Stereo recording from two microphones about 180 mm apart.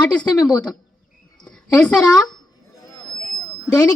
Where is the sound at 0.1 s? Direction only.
5° left (ahead or behind).